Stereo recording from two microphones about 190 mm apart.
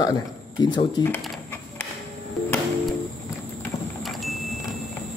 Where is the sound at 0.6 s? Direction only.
25° left (ahead or behind).